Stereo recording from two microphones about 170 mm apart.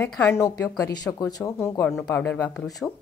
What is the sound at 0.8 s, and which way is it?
Speech, 25° left (ahead or behind).